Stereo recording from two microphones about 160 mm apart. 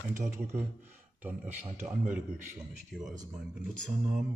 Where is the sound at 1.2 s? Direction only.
10° right (ahead or behind).